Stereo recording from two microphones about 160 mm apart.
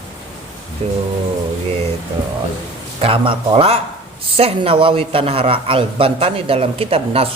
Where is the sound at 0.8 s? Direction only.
40° right (ahead or behind).